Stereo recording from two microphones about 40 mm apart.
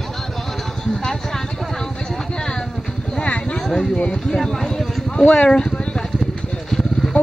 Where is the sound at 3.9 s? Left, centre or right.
Left.